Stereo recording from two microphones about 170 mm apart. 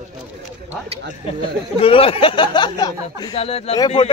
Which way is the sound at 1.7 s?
35° left (ahead or behind).